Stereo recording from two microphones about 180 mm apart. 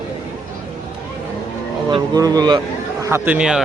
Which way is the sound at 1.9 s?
20° right (ahead or behind).